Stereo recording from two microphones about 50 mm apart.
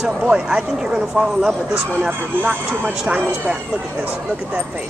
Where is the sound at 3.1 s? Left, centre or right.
Right.